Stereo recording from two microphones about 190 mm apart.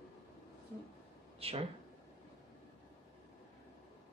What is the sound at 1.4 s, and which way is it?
Speech, 30° right (ahead or behind).